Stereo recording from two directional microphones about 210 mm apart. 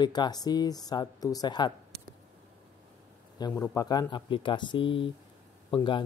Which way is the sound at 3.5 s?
15° left (ahead or behind).